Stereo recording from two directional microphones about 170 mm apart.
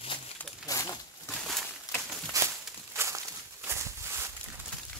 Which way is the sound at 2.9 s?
15° right (ahead or behind).